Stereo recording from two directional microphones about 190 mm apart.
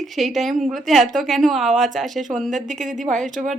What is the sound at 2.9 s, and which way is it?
Speech, 40° right (ahead or behind).